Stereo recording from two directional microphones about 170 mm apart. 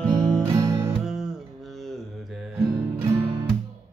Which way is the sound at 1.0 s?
Centre (ahead or behind).